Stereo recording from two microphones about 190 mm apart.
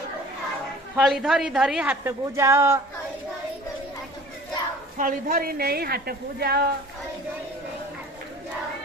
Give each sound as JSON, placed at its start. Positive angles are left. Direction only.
{"t": 0.9, "sound": "a woman's voice", "side_deg": 0}
{"t": 4.9, "sound": "a woman's voice", "side_deg": -45}